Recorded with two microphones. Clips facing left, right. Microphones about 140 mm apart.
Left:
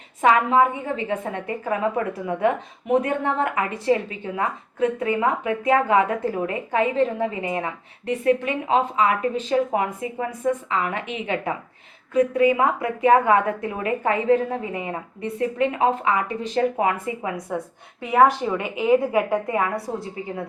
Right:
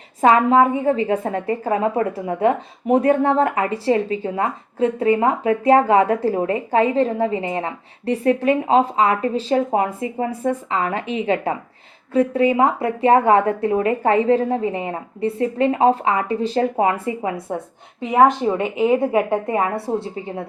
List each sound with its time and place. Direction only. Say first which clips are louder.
0.2 s a woman's voice: right 4 dB; 35° right (ahead or behind)